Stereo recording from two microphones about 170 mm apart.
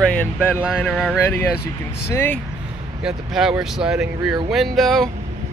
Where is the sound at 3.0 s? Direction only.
5° right (ahead or behind).